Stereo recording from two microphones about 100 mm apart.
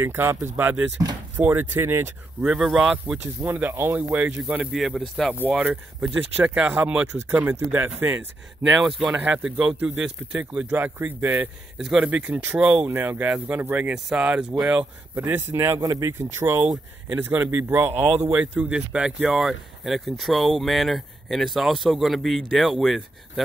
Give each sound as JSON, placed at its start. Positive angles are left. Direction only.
{"t": 0.0, "sound": "speech", "side_deg": -25}
{"t": 2.4, "sound": "speech", "side_deg": -5}
{"t": 4.7, "sound": "speech", "side_deg": 0}
{"t": 5.5, "sound": "speech", "side_deg": -15}
{"t": 15.1, "sound": "speech", "side_deg": -20}